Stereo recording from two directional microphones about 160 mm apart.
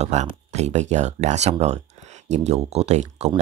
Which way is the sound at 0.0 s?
45° right (ahead or behind).